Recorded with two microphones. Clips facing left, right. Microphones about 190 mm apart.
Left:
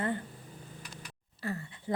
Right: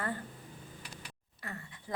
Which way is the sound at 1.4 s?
30° left (ahead or behind).